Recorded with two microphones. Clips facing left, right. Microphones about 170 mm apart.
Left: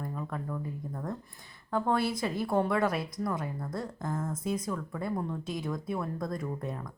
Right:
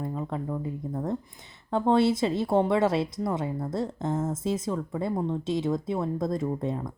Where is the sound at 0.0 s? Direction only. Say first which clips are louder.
Right 5 dB; 25° right (ahead or behind).